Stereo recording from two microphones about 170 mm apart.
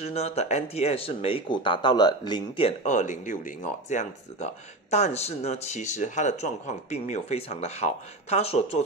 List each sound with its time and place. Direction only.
0.0 s speech: 40° left (ahead or behind)
2.8 s speech: 45° left (ahead or behind)